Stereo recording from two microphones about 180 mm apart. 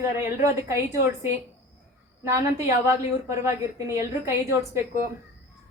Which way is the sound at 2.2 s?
15° right (ahead or behind).